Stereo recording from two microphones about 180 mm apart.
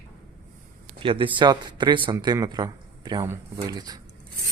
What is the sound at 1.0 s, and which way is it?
Speech, 30° right (ahead or behind).